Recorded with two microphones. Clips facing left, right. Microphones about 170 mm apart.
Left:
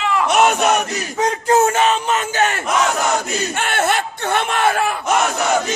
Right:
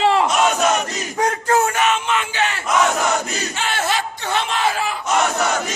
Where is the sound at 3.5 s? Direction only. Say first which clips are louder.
Left 3 dB; 55° left (ahead or behind).